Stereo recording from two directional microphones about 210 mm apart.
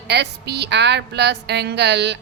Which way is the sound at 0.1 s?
55° right (ahead or behind).